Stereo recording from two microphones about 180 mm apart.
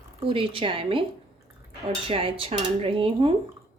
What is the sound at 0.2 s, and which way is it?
Speech, 30° right (ahead or behind).